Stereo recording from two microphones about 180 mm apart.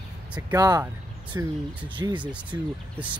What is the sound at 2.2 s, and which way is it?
Speech, 10° right (ahead or behind).